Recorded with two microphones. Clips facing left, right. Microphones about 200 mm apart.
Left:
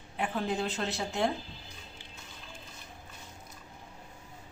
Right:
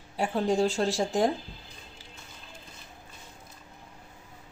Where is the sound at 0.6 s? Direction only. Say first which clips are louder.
Right 8 dB; 30° right (ahead or behind).